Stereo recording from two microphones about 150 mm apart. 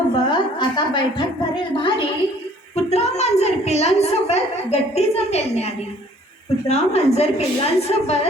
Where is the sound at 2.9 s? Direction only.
45° left (ahead or behind).